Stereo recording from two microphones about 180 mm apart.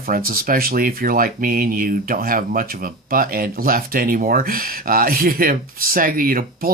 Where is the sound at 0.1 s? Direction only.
55° right (ahead or behind).